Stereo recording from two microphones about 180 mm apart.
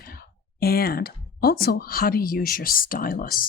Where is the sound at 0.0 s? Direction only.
55° left (ahead or behind).